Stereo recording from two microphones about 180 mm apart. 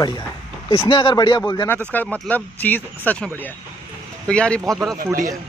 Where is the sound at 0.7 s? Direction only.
30° left (ahead or behind).